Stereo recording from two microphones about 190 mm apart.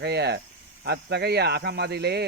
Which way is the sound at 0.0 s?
60° right (ahead or behind).